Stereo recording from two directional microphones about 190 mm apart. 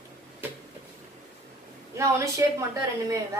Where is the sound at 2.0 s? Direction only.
15° right (ahead or behind).